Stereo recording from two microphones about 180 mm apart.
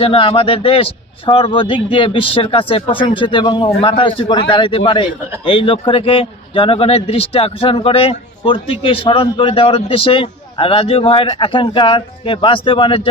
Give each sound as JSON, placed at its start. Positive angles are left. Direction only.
{"t": 0.0, "sound": "speech", "side_deg": 30}